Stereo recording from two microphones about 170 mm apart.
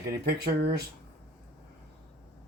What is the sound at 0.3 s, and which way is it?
Speech, 70° right (ahead or behind).